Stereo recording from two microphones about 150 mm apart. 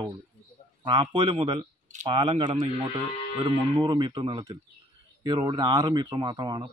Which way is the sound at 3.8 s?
30° right (ahead or behind).